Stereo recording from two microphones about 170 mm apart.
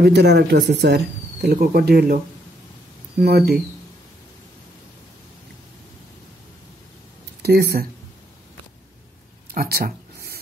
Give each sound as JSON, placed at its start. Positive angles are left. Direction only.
{"t": 0.0, "sound": "speech", "side_deg": -75}
{"t": 3.2, "sound": "speech", "side_deg": -70}
{"t": 7.4, "sound": "speech", "side_deg": -70}
{"t": 9.5, "sound": "a sound", "side_deg": -60}